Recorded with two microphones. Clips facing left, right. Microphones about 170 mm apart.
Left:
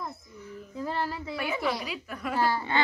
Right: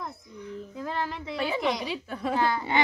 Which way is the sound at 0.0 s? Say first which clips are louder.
Right 1 dB; 5° left (ahead or behind).